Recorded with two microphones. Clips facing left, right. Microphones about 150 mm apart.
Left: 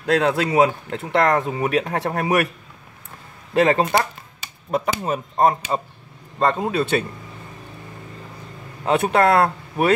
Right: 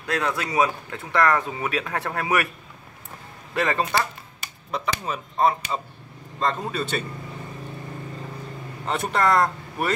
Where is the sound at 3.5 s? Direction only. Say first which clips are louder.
Left 6 dB; 55° left (ahead or behind).